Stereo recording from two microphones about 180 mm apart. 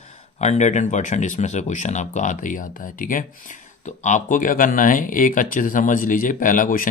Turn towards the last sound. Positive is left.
turn(degrees=50)  # may be behind; listen again after turning